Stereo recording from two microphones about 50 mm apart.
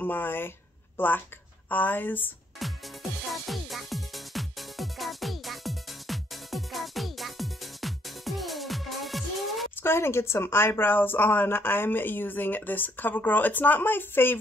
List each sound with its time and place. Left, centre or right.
0.0 s speech: left
2.6 s music: centre
9.8 s speech: left